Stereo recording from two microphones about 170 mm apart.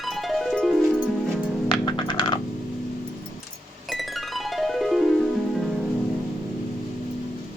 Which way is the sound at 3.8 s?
Centre (ahead or behind).